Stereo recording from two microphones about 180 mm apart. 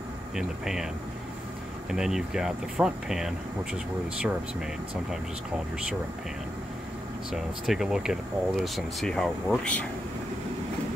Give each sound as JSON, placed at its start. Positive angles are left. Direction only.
{"t": 0.4, "sound": "speech", "side_deg": 0}
{"t": 1.9, "sound": "speech", "side_deg": -5}
{"t": 7.2, "sound": "speech", "side_deg": 0}